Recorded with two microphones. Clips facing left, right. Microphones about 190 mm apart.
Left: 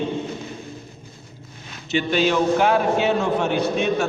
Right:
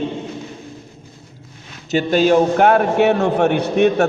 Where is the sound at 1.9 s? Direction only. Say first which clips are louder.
Right 6 dB; 45° right (ahead or behind); by 4.1 s 65° right (ahead or behind).